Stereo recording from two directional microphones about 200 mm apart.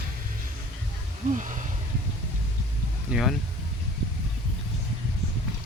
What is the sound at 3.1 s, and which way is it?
Speech, centre (ahead or behind).